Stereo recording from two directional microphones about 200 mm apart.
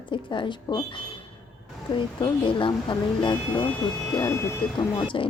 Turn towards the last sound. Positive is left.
turn(degrees=25)  # may be behind; listen again after turning